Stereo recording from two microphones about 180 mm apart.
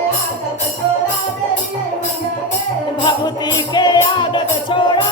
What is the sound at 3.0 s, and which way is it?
Music, 25° left (ahead or behind).